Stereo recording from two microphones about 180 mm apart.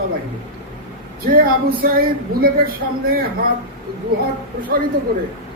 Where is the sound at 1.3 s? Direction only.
55° right (ahead or behind).